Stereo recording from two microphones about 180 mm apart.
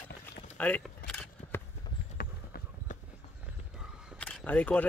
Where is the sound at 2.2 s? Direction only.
55° left (ahead or behind).